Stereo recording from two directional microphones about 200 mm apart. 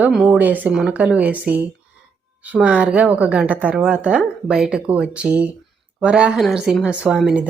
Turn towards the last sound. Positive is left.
turn(degrees=-5)  # may be behind; listen again after turning